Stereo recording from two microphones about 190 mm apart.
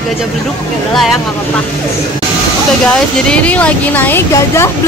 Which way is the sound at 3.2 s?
5° left (ahead or behind).